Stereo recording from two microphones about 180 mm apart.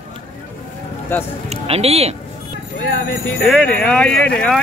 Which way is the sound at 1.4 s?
35° right (ahead or behind).